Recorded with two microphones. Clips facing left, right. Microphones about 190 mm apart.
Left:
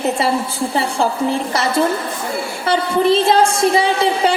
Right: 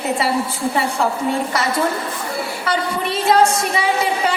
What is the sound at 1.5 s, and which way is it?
A woman's voice, 30° left (ahead or behind).